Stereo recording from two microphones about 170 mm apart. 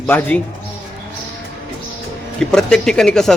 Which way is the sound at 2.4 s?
5° left (ahead or behind).